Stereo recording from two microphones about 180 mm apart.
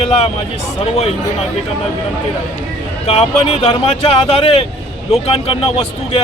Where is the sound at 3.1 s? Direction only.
30° left (ahead or behind).